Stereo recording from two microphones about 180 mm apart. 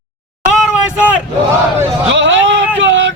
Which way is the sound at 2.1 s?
90° right.